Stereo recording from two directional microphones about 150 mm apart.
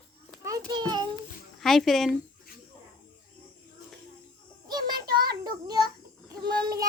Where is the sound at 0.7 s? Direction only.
30° right (ahead or behind).